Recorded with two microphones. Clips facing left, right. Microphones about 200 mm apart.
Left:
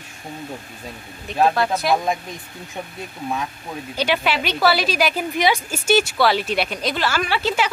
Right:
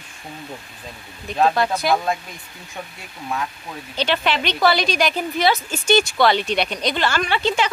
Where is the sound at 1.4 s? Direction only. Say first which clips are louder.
Even; centre (ahead or behind).